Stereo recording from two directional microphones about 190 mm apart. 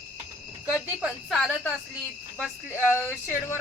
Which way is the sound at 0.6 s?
Centre (ahead or behind).